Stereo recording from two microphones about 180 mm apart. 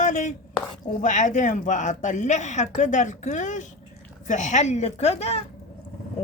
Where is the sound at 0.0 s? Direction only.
45° left (ahead or behind).